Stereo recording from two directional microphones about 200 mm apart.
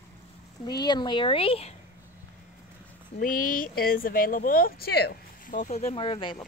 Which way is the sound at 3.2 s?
45° left (ahead or behind).